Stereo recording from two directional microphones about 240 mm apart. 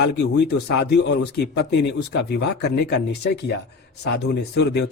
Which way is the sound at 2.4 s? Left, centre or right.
Left.